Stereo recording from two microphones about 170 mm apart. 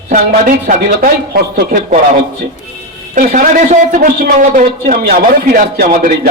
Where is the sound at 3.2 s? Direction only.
50° right (ahead or behind).